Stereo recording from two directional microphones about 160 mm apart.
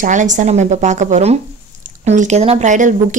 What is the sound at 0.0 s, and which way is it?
A woman's voice, 50° right (ahead or behind).